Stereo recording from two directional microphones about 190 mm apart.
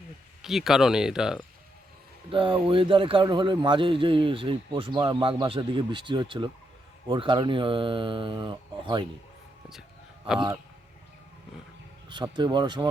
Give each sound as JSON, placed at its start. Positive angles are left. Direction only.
{"t": 0.4, "sound": "speech", "side_deg": 0}
{"t": 2.3, "sound": "a man's voice", "side_deg": -25}
{"t": 12.0, "sound": "a man's voice", "side_deg": -25}